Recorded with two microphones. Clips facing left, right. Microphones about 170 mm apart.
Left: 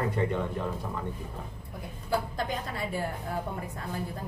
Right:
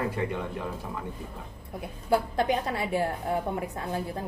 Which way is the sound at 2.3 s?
70° right (ahead or behind).